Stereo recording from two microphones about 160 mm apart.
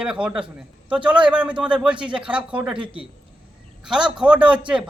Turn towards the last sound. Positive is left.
turn(degrees=-5)  # may be behind; listen again after turning